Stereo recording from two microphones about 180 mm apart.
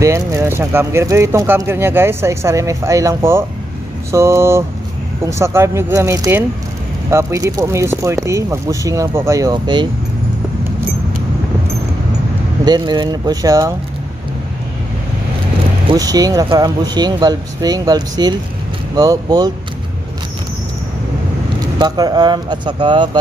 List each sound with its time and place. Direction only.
0.0 s speech: 15° right (ahead or behind)
12.6 s speech: 25° right (ahead or behind)
15.9 s speech: 20° right (ahead or behind)
21.7 s speech: 20° right (ahead or behind)